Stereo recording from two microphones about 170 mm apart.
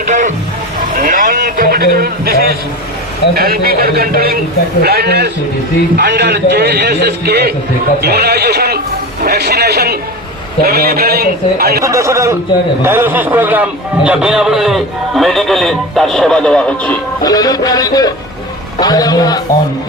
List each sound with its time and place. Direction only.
0.1 s a man's voice: 45° right (ahead or behind); by 5.3 s 70° right (ahead or behind)
6.0 s a man's voice: 90° right; by 11.8 s 65° right (ahead or behind)
11.8 s a man's voice: 20° right (ahead or behind); by 16.9 s 5° left (ahead or behind)
17.2 s speech: 20° left (ahead or behind)